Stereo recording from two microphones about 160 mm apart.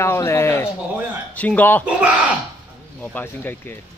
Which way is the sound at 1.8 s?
10° right (ahead or behind).